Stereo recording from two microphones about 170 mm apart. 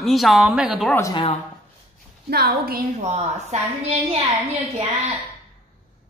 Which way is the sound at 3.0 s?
40° right (ahead or behind).